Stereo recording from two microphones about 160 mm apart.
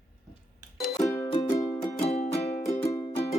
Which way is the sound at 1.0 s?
15° left (ahead or behind).